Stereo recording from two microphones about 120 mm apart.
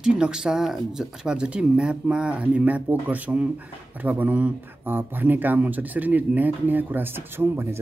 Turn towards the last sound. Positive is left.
turn(degrees=-20)  # may be behind; listen again after turning